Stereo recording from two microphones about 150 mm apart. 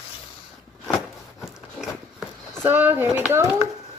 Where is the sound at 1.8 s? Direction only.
5° right (ahead or behind).